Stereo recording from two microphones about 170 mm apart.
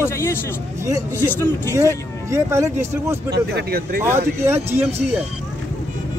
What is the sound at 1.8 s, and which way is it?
Speech, 15° right (ahead or behind).